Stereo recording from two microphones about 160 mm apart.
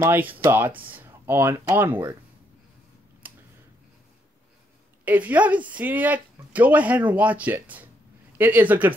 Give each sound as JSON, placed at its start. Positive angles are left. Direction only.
{"t": 0.0, "sound": "speech", "side_deg": -10}
{"t": 3.2, "sound": "a sound", "side_deg": -10}
{"t": 5.0, "sound": "speech", "side_deg": -10}